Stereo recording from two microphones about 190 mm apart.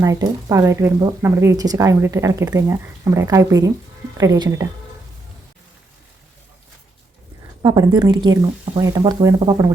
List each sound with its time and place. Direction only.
0.0 s speech: 20° right (ahead or behind)
7.6 s speech: 20° right (ahead or behind)